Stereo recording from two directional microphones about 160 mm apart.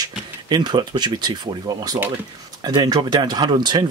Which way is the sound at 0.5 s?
25° right (ahead or behind).